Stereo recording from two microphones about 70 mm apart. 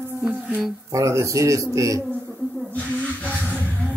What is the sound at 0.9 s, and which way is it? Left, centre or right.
Speech, right.